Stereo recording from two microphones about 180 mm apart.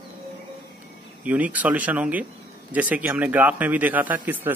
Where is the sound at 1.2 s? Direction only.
10° right (ahead or behind).